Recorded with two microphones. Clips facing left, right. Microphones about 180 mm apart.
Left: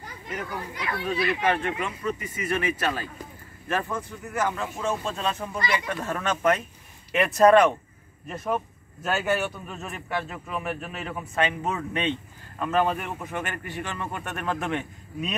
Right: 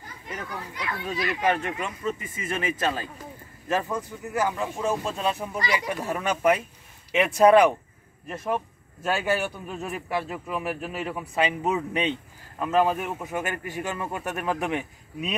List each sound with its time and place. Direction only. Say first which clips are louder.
1.1 s speech: even; 20° right (ahead or behind)